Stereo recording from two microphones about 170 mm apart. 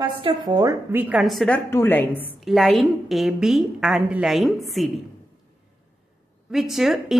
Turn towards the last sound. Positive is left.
turn(degrees=0)  # may be behind; listen again after turning